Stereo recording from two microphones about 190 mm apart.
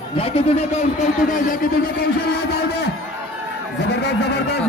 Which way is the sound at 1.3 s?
45° left (ahead or behind).